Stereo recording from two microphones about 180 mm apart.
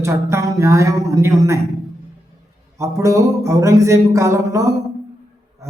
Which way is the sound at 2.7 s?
15° right (ahead or behind).